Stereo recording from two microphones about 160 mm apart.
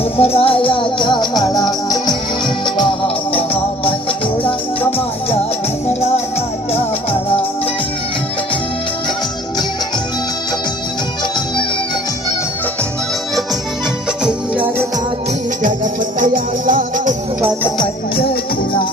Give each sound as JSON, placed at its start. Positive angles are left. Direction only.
{"t": 0.2, "sound": "music", "side_deg": 35}
{"t": 2.6, "sound": "music", "side_deg": 30}
{"t": 14.3, "sound": "music", "side_deg": -10}
{"t": 15.6, "sound": "music", "side_deg": -60}